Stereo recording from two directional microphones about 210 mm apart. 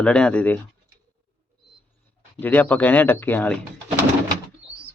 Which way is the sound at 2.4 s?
10° left (ahead or behind).